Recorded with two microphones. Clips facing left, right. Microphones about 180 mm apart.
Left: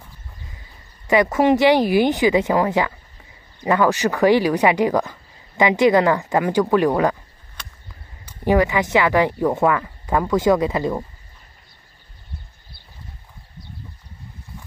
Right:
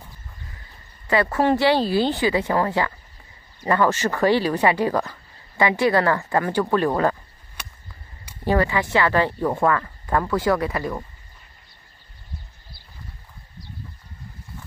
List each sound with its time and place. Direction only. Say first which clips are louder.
1.0 s speech: left 4 dB; 15° left (ahead or behind)
8.5 s speech: left 3 dB; 15° left (ahead or behind)